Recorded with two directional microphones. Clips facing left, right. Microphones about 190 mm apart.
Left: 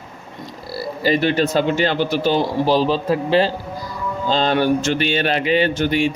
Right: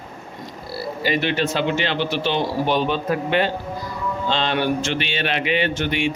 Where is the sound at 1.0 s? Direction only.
40° left (ahead or behind).